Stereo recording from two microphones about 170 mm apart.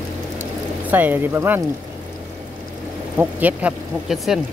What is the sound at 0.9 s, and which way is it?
Speech, 10° right (ahead or behind).